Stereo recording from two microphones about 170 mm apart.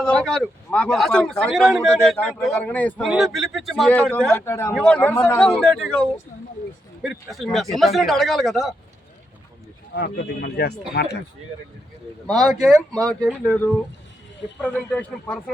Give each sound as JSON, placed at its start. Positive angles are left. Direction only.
{"t": 0.0, "sound": "speech", "side_deg": 5}
{"t": 3.0, "sound": "speech", "side_deg": 0}
{"t": 9.9, "sound": "speech", "side_deg": 80}
{"t": 12.3, "sound": "speech", "side_deg": 5}